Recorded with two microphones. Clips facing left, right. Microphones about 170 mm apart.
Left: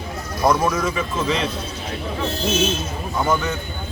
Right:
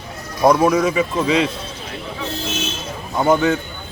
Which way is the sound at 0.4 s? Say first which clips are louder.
Right 5 dB; 20° right (ahead or behind).